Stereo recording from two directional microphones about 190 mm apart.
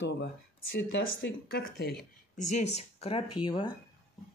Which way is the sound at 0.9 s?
60° left (ahead or behind).